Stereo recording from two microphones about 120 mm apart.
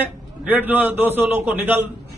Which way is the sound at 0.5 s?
15° right (ahead or behind).